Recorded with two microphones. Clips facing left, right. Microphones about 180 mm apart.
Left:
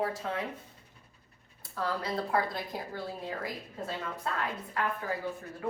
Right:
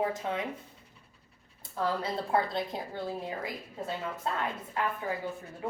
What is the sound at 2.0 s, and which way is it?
Speech, 25° right (ahead or behind).